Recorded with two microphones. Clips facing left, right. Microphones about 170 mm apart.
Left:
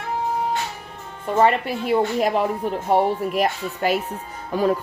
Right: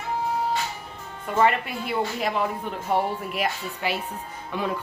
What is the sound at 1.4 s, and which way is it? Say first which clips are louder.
Speech: left 4 dB; 35° left (ahead or behind).